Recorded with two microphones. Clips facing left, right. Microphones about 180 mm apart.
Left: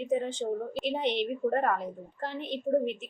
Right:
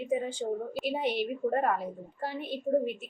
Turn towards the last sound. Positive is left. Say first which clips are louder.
# left 1 dB
turn(degrees=-10)  # may be behind; listen again after turning